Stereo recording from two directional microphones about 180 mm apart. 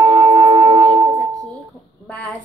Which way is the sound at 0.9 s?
20° right (ahead or behind).